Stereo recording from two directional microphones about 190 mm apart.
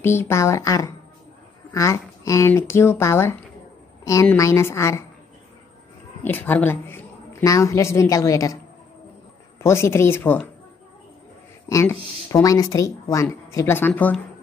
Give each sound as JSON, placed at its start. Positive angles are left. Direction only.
{"t": 0.0, "sound": "a woman's voice", "side_deg": 10}
{"t": 6.2, "sound": "speech", "side_deg": 10}
{"t": 9.6, "sound": "speech", "side_deg": 15}
{"t": 11.7, "sound": "speech", "side_deg": 15}